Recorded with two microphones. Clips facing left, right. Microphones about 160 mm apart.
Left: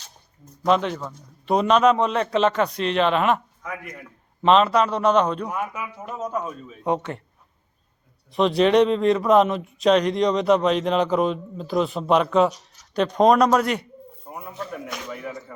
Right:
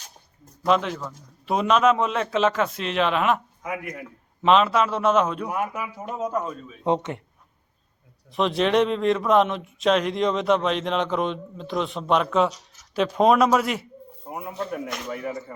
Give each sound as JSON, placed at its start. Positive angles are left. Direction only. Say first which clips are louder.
{"t": 0.6, "sound": "speech", "louder": "left 1 dB", "side_deg": 0}
{"t": 6.8, "sound": "speech", "louder": "right 1 dB", "side_deg": -20}
{"t": 8.3, "sound": "speech", "louder": "left 4 dB", "side_deg": 0}